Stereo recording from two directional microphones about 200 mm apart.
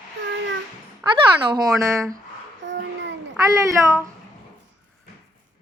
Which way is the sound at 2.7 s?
60° right (ahead or behind).